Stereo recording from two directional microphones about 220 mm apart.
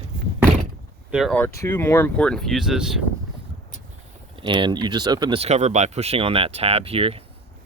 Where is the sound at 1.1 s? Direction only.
Centre (ahead or behind).